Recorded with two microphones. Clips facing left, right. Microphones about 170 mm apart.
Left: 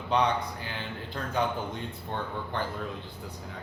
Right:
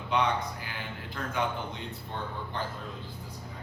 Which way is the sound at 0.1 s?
35° left (ahead or behind).